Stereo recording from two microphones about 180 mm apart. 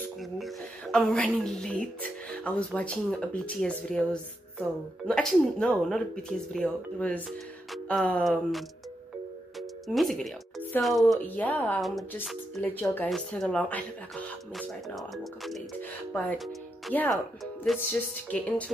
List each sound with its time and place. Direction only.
0.9 s speech: 5° left (ahead or behind)
9.6 s music: centre (ahead or behind)
10.8 s speech: centre (ahead or behind)